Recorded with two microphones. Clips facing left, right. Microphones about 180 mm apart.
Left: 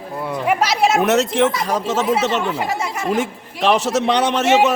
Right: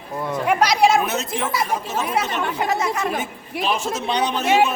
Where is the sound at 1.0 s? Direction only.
85° left.